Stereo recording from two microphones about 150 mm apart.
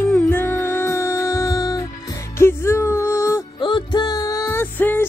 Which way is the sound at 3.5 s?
30° left (ahead or behind).